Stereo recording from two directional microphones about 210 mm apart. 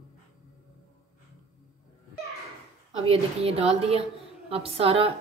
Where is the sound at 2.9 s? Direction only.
30° right (ahead or behind).